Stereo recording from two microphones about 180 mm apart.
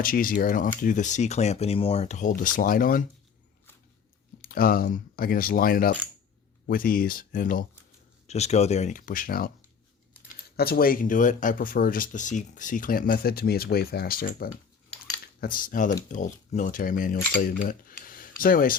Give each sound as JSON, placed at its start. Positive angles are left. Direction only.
{"t": 0.0, "sound": "speech", "side_deg": 50}
{"t": 4.4, "sound": "speech", "side_deg": 55}
{"t": 8.3, "sound": "speech", "side_deg": 35}
{"t": 10.6, "sound": "speech", "side_deg": 55}